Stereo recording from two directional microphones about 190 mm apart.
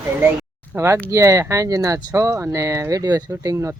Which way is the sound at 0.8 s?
15° right (ahead or behind).